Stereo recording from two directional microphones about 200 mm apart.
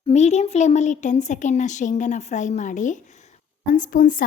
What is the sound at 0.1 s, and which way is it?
A woman's voice, 35° left (ahead or behind).